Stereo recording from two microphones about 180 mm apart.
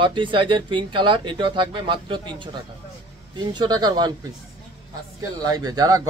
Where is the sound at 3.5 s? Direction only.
20° right (ahead or behind).